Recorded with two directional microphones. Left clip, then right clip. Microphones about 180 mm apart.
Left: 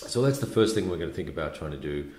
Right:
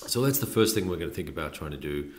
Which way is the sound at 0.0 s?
45° right (ahead or behind).